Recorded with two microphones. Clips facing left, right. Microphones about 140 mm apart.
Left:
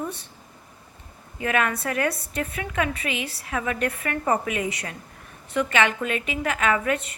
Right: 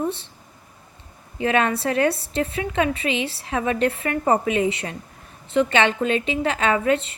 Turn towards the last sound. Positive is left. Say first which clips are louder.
# right 3 dB
turn(degrees=-25)  # may be behind; listen again after turning